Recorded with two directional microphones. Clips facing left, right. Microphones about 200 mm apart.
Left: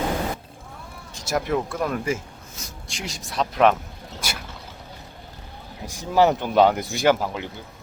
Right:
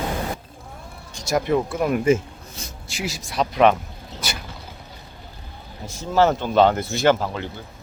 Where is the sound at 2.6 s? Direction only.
30° right (ahead or behind).